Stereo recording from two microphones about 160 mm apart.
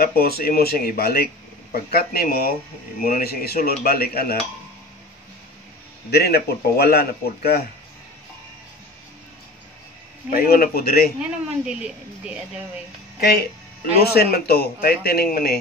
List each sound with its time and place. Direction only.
0.0 s a man's voice: 70° left (ahead or behind)
6.0 s a man's voice: 80° left
10.3 s a man's voice: 65° left (ahead or behind)
11.1 s a woman's voice: 5° right (ahead or behind)
13.2 s a man's voice: 75° left (ahead or behind)